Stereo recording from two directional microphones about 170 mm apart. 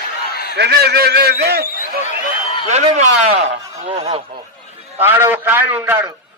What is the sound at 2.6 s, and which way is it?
A man's voice, 45° right (ahead or behind).